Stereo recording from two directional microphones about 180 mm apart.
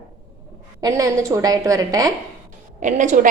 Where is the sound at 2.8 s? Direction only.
45° right (ahead or behind).